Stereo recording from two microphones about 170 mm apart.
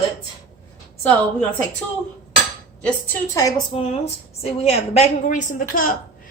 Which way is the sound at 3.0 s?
20° left (ahead or behind).